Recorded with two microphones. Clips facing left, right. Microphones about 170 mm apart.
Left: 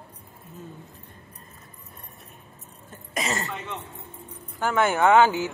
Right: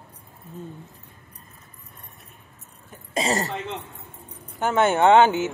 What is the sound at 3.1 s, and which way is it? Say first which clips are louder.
Speech: right 5 dB; 35° right (ahead or behind).